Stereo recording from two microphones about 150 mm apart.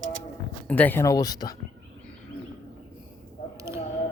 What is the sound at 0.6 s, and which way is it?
Speech, 10° left (ahead or behind).